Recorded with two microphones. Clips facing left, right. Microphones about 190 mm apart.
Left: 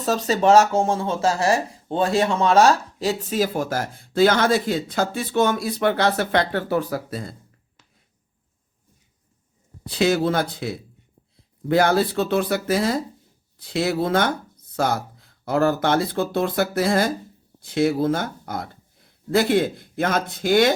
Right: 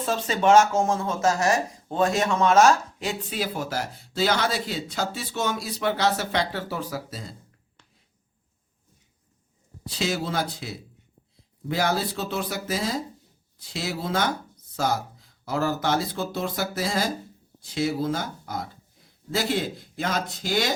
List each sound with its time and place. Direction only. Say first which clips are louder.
0.0 s speech: left 4 dB; 40° left (ahead or behind); by 7.3 s 55° left (ahead or behind)
9.8 s speech: left 8 dB; 60° left (ahead or behind)